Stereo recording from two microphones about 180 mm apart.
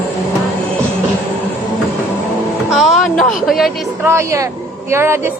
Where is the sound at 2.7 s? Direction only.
Centre (ahead or behind).